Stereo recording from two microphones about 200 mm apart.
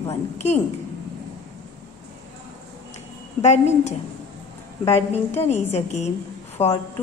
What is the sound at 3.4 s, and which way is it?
Speech, 35° left (ahead or behind).